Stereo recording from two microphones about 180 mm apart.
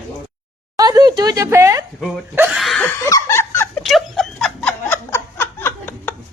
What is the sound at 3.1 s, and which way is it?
Snicker, 15° left (ahead or behind).